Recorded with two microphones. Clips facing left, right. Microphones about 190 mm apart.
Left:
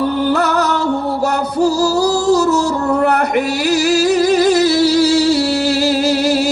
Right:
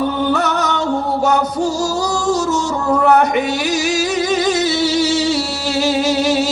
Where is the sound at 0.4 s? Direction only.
60° left (ahead or behind).